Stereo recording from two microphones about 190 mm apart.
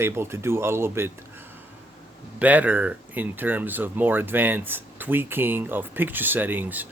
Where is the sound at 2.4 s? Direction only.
10° right (ahead or behind).